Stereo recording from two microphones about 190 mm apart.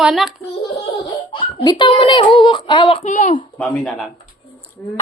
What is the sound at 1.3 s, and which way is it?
A child's voice, 25° left (ahead or behind).